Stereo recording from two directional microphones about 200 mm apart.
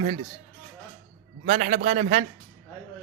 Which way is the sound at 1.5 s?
35° right (ahead or behind).